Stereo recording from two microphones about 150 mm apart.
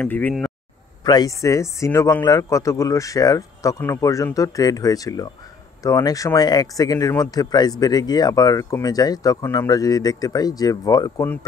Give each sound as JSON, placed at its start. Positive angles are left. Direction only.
{"t": 0.0, "sound": "speech", "side_deg": 10}
{"t": 1.0, "sound": "a man's voice", "side_deg": 25}